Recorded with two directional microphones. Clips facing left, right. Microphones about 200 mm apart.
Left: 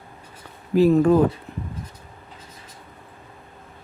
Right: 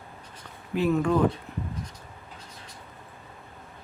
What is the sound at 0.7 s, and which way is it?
Speech, 35° left (ahead or behind).